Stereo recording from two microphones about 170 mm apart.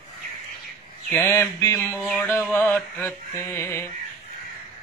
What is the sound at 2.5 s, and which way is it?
Mantra, 10° left (ahead or behind).